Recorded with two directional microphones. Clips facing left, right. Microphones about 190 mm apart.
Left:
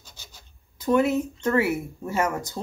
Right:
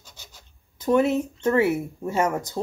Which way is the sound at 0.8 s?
25° right (ahead or behind).